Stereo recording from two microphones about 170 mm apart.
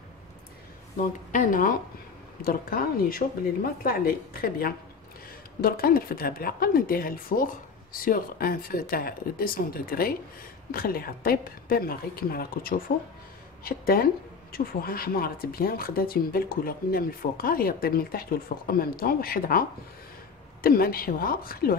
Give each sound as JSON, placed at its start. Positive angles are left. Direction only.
{"t": 1.3, "sound": "speech", "side_deg": 50}
{"t": 20.6, "sound": "speech", "side_deg": 60}